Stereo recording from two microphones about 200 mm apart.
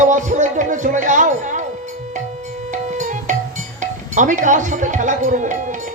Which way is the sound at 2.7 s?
40° right (ahead or behind).